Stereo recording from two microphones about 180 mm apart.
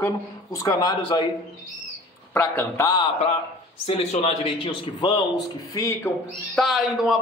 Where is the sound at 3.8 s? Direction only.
35° left (ahead or behind).